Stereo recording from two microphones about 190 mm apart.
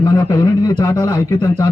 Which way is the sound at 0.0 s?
20° left (ahead or behind).